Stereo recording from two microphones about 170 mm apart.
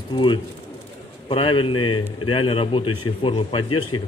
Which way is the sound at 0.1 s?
30° left (ahead or behind).